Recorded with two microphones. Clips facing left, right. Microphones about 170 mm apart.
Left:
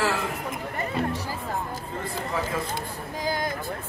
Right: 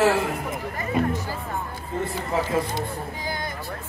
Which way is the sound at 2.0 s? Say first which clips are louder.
Right 4 dB; 25° right (ahead or behind).